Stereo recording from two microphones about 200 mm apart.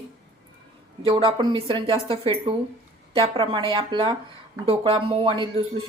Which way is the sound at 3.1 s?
25° right (ahead or behind).